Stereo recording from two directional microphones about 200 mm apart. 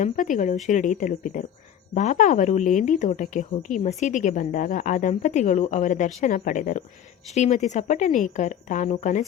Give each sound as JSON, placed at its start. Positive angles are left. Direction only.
{"t": 0.0, "sound": "a woman's voice", "side_deg": 40}